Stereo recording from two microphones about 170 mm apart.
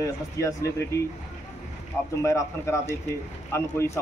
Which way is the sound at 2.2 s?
15° left (ahead or behind).